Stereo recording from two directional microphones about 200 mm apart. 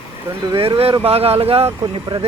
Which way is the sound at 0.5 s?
25° right (ahead or behind).